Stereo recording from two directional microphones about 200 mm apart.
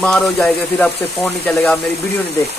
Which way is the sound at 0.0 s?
5° left (ahead or behind).